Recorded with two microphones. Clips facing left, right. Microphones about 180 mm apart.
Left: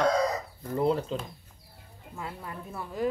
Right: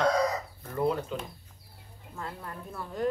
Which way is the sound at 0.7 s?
25° left (ahead or behind).